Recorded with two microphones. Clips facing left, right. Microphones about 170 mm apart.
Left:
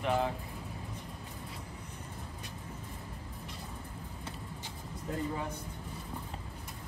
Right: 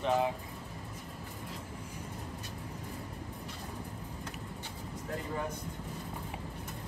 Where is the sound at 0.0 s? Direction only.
20° right (ahead or behind).